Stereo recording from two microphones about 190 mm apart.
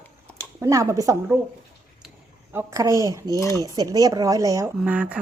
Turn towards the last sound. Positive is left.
turn(degrees=-5)  # may be behind; listen again after turning